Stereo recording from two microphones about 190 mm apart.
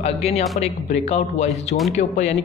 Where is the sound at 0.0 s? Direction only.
35° left (ahead or behind).